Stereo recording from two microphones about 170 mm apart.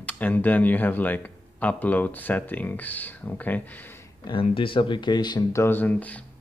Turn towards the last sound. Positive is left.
turn(degrees=10)  # may be behind; listen again after turning